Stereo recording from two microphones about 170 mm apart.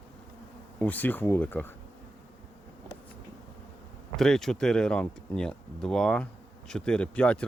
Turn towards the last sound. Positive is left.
turn(degrees=5)  # may be behind; listen again after turning